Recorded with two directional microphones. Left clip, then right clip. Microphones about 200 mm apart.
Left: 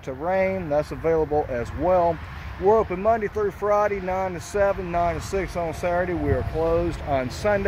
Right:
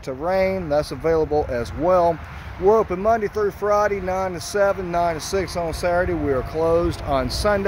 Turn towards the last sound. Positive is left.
turn(degrees=-15)  # may be behind; listen again after turning